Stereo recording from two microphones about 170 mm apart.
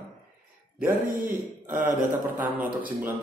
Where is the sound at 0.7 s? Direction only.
55° right (ahead or behind).